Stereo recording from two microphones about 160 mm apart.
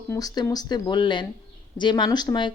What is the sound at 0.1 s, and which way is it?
A woman's voice, 25° left (ahead or behind).